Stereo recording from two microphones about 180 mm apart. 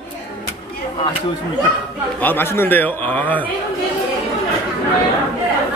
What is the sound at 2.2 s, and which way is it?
A man's voice, 10° left (ahead or behind).